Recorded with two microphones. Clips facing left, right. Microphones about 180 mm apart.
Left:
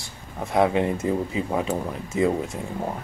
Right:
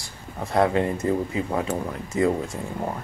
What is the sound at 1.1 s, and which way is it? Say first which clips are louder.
Speech: even; 15° left (ahead or behind).